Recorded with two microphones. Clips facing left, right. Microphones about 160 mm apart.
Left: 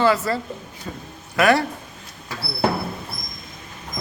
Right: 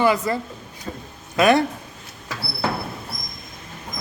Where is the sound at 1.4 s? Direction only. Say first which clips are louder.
Right 1 dB; 20° right (ahead or behind).